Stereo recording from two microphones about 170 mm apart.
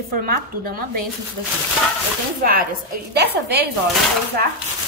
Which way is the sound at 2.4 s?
60° right (ahead or behind).